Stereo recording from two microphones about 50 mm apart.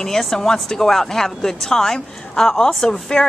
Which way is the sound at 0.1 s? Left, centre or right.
Centre.